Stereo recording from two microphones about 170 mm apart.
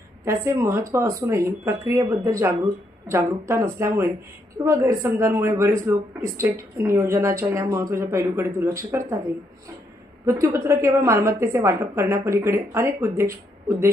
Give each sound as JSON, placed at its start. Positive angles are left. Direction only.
{"t": 0.3, "sound": "speech", "side_deg": -15}
{"t": 10.2, "sound": "speech", "side_deg": -15}